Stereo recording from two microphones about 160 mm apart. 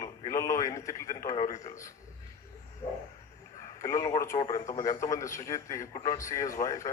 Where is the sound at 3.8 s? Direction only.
20° left (ahead or behind).